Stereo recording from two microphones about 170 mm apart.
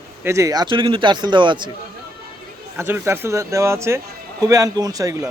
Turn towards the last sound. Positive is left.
turn(degrees=-20)  # may be behind; listen again after turning